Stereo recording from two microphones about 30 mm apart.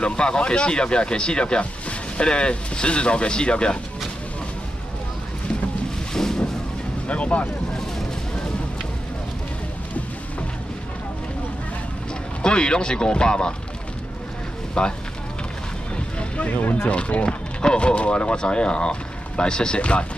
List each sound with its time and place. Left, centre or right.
0.0 s speech: left
1.6 s a sound: left
2.2 s speech: left
6.1 s vehicle: centre
7.1 s speech: left
12.4 s speech: left
14.7 s speech: left
16.2 s vehicle: left
16.5 s speech: left
16.8 s speech: left
19.8 s speech: left